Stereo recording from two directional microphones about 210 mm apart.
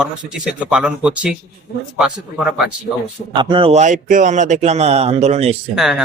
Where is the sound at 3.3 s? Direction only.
25° right (ahead or behind).